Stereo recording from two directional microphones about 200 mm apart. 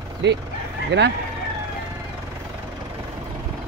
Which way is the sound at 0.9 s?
60° right (ahead or behind).